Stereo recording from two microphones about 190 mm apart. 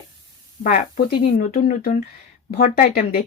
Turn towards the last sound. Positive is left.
turn(degrees=45)  # may be behind; listen again after turning